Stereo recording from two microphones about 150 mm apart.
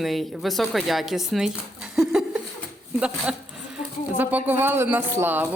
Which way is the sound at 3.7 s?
10° right (ahead or behind).